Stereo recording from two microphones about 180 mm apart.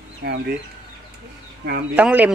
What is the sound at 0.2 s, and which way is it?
Speech, 60° right (ahead or behind).